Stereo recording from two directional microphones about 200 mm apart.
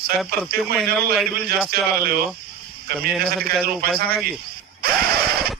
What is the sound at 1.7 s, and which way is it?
Speech, 50° right (ahead or behind).